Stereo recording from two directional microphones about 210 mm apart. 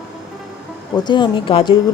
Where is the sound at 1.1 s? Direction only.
20° left (ahead or behind).